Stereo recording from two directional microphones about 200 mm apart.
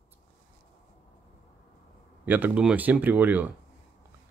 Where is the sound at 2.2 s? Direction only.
10° right (ahead or behind).